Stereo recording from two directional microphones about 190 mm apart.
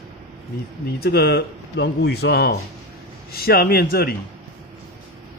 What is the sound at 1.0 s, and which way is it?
Speech, 60° left (ahead or behind).